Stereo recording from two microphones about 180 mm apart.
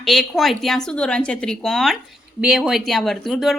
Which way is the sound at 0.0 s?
Centre (ahead or behind).